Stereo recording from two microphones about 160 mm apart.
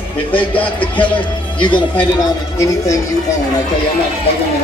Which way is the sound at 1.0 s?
30° left (ahead or behind).